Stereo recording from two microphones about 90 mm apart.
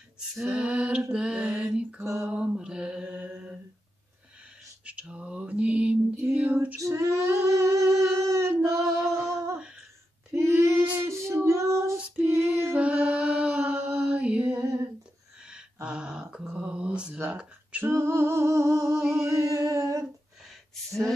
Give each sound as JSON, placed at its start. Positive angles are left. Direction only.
{"t": 0.5, "sound": "a capella", "side_deg": -10}
{"t": 1.1, "sound": "female singing", "side_deg": -10}
{"t": 2.2, "sound": "mantra", "side_deg": -10}
{"t": 4.8, "sound": "a sound", "side_deg": -15}
{"t": 6.8, "sound": "female singing", "side_deg": -35}
{"t": 8.7, "sound": "a sound", "side_deg": -35}
{"t": 10.3, "sound": "female singing", "side_deg": -30}
{"t": 12.0, "sound": "female singing", "side_deg": -20}
{"t": 12.8, "sound": "mantra", "side_deg": -15}
{"t": 15.4, "sound": "a sound", "side_deg": -10}
{"t": 17.8, "sound": "humming", "side_deg": -25}